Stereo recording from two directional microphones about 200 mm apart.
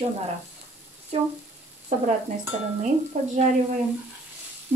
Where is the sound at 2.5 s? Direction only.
35° right (ahead or behind).